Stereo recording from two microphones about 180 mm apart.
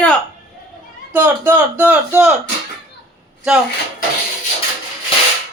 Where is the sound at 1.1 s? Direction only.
10° right (ahead or behind).